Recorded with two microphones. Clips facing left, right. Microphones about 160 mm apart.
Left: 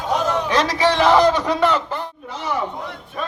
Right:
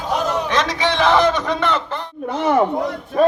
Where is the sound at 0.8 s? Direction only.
5° left (ahead or behind).